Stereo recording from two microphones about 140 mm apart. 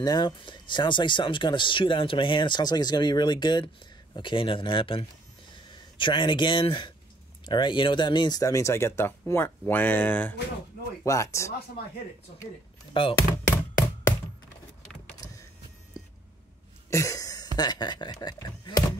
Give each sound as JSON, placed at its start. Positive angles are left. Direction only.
{"t": 0.0, "sound": "speech", "side_deg": 30}
{"t": 12.9, "sound": "speech", "side_deg": 40}
{"t": 13.3, "sound": "a sound", "side_deg": 25}
{"t": 15.2, "sound": "power windows", "side_deg": 25}
{"t": 16.9, "sound": "a sound", "side_deg": 25}
{"t": 17.6, "sound": "speech", "side_deg": 30}